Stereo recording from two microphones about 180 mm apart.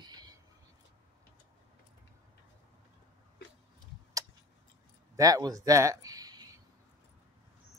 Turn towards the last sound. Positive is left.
turn(degrees=-20)  # may be behind; listen again after turning